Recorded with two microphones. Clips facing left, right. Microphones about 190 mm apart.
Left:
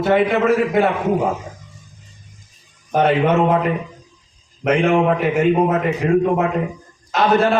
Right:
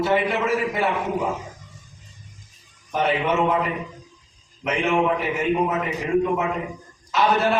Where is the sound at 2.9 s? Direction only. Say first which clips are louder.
Left 6 dB; 55° left (ahead or behind).